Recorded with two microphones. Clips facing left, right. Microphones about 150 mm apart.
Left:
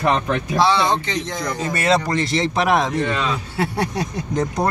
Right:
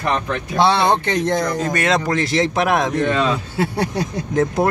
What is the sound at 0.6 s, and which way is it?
Speech, 60° right (ahead or behind).